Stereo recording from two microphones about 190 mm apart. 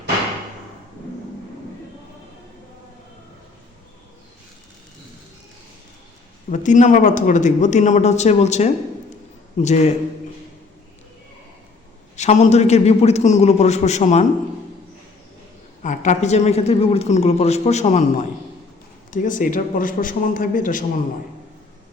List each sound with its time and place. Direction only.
6.5 s a woman's voice: 40° left (ahead or behind)
12.1 s a woman's voice: 40° left (ahead or behind)
15.8 s a woman's voice: 40° left (ahead or behind)